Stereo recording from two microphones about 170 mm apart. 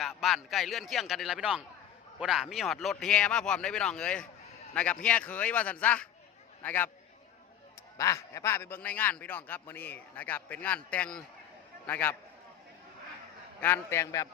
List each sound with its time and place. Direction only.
0.0 s a man's voice: centre (ahead or behind)
7.9 s a man's voice: 15° left (ahead or behind)
13.6 s a man's voice: 15° left (ahead or behind)